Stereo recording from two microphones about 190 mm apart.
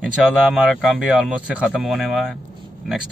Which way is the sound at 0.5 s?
Centre (ahead or behind).